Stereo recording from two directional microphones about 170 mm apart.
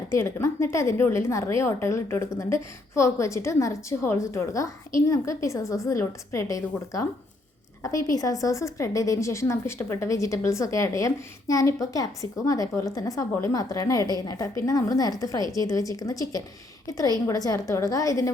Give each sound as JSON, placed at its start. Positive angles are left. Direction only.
{"t": 0.1, "sound": "a woman's voice", "side_deg": 15}